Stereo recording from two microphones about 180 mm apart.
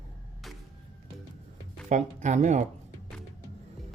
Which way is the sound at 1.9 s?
40° right (ahead or behind).